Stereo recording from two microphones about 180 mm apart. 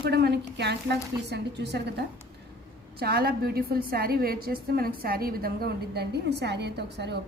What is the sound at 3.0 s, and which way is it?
A woman's voice, 60° right (ahead or behind).